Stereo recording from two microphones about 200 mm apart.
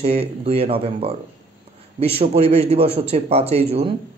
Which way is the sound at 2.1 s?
30° right (ahead or behind).